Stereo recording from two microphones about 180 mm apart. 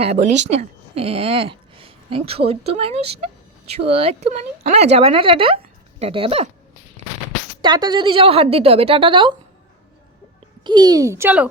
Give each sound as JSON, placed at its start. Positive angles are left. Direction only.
{"t": 0.0, "sound": "speech", "side_deg": -40}
{"t": 7.6, "sound": "a woman's voice", "side_deg": -25}
{"t": 10.6, "sound": "a woman's voice", "side_deg": -25}